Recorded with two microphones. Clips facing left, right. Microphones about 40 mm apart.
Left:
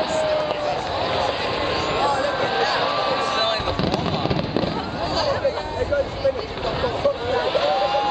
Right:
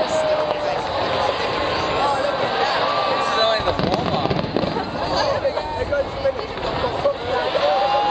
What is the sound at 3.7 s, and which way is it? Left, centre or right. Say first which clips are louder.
Fireworks: right 3 dB; centre.